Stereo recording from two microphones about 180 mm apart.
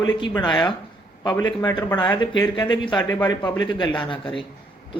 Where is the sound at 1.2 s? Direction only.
20° left (ahead or behind).